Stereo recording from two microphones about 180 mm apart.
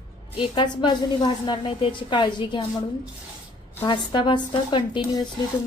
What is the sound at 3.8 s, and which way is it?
A woman's voice, 25° left (ahead or behind).